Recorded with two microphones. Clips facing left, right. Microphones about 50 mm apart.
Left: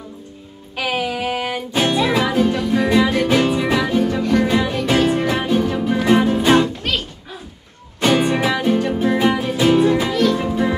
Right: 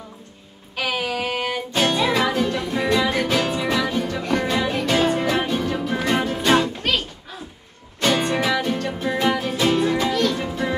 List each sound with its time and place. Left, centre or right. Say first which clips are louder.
0.7 s music: left 3 dB; centre
8.0 s music: left 4 dB; centre